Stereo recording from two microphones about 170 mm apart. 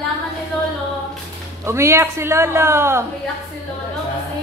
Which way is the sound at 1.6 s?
15° right (ahead or behind).